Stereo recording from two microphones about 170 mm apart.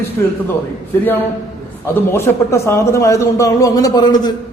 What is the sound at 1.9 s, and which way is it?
A man's voice, 15° left (ahead or behind).